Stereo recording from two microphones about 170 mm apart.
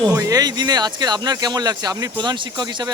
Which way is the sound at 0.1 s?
20° right (ahead or behind).